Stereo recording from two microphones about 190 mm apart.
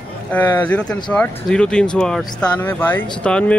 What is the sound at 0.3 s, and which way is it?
Speech, 5° left (ahead or behind).